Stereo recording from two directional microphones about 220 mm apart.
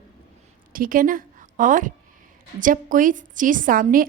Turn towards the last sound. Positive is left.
turn(degrees=-40)  # may be behind; listen again after turning